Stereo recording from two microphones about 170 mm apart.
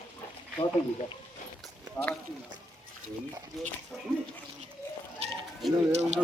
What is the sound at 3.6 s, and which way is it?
Speech, centre (ahead or behind).